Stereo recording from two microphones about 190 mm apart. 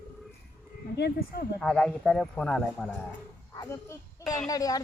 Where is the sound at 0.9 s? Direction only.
60° left (ahead or behind).